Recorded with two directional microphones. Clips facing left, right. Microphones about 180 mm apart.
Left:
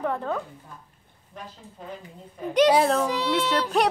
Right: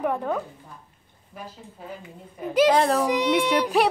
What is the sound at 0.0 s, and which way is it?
Speech, 15° right (ahead or behind).